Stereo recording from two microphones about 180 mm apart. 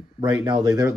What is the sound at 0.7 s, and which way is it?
Speech, 15° right (ahead or behind).